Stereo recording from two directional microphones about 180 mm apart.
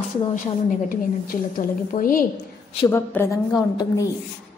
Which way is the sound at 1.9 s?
50° left (ahead or behind).